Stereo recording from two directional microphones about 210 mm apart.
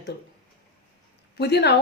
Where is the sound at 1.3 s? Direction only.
55° left (ahead or behind).